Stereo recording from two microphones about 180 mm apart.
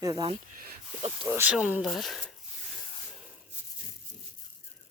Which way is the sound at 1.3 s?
10° right (ahead or behind).